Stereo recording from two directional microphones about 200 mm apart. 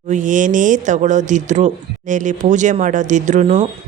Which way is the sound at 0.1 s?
40° right (ahead or behind).